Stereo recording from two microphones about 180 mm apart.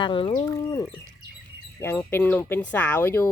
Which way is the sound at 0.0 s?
30° left (ahead or behind).